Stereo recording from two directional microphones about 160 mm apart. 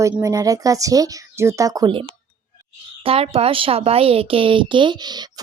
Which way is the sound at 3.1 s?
40° right (ahead or behind).